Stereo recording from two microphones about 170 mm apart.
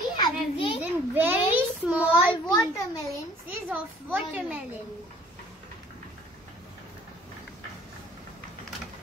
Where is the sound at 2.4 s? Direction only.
20° left (ahead or behind).